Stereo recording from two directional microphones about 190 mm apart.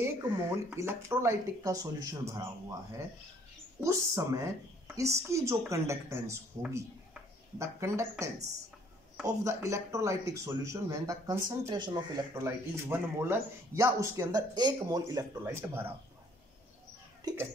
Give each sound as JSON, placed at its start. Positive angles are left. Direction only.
{"t": 0.0, "sound": "speech", "side_deg": -10}
{"t": 3.8, "sound": "speech", "side_deg": -15}
{"t": 9.4, "sound": "speech", "side_deg": -15}
{"t": 17.2, "sound": "a sound", "side_deg": -20}